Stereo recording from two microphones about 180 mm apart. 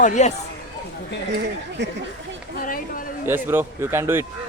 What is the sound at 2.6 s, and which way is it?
Speech, 50° left (ahead or behind).